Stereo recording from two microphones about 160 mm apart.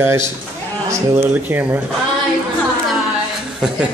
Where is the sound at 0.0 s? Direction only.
15° right (ahead or behind).